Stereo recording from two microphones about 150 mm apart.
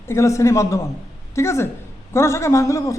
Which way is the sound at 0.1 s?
20° left (ahead or behind).